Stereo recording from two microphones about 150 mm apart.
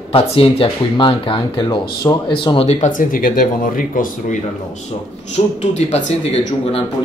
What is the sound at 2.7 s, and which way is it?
Speech, 55° left (ahead or behind).